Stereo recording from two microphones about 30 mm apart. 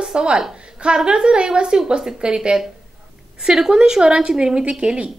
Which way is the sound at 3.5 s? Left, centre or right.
Right.